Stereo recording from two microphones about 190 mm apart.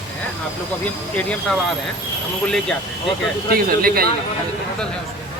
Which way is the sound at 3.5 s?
50° right (ahead or behind).